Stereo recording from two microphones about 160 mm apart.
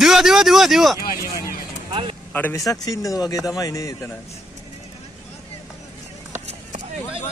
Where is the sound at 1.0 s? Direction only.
65° left (ahead or behind).